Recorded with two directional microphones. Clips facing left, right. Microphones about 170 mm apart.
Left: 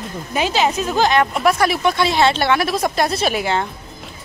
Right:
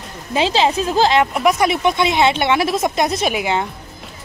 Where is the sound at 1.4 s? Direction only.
20° right (ahead or behind).